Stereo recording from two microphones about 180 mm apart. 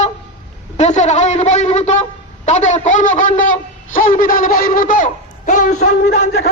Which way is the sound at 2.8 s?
45° left (ahead or behind).